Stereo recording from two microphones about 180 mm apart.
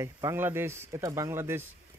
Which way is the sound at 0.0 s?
15° right (ahead or behind).